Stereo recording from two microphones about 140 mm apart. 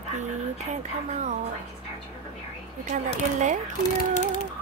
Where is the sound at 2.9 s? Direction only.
65° right (ahead or behind).